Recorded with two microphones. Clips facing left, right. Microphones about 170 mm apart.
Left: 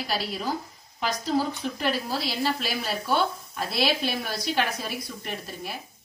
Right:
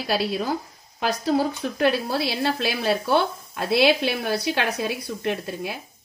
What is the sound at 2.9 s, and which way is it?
Speech, 65° right (ahead or behind).